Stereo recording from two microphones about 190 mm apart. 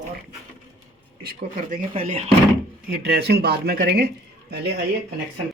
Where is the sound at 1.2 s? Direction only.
50° right (ahead or behind).